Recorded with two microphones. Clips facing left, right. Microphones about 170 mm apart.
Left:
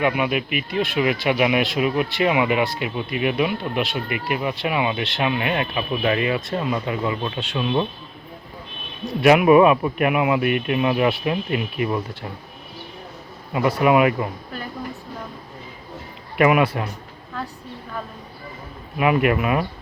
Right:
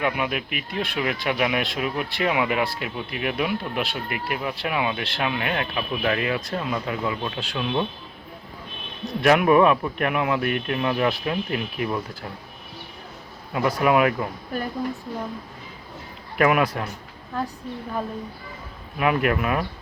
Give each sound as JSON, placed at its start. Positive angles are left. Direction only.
{"t": 0.0, "sound": "speech", "side_deg": 5}
{"t": 9.2, "sound": "speech", "side_deg": 10}
{"t": 13.5, "sound": "speech", "side_deg": 5}
{"t": 16.4, "sound": "speech", "side_deg": 5}
{"t": 18.9, "sound": "speech", "side_deg": 5}